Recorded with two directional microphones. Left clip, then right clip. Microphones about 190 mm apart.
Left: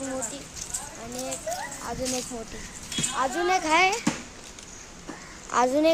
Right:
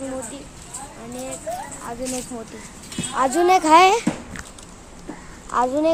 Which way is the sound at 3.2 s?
50° right (ahead or behind).